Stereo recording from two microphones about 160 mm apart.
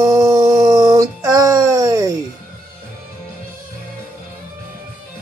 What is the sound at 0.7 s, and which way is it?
Music, 20° right (ahead or behind).